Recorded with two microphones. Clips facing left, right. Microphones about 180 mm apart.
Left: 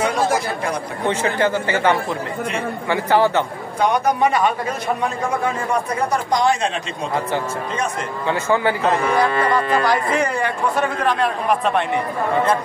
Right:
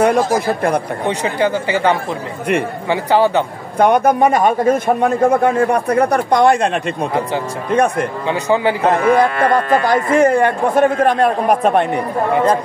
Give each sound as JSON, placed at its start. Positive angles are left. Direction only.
{"t": 1.0, "sound": "speech", "side_deg": -15}
{"t": 3.7, "sound": "a man's voice", "side_deg": -55}
{"t": 7.7, "sound": "a man's voice", "side_deg": -60}
{"t": 8.3, "sound": "speech", "side_deg": -15}
{"t": 8.8, "sound": "speech", "side_deg": -50}